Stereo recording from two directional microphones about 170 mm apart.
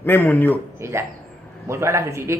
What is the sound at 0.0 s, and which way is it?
Speech, 10° left (ahead or behind).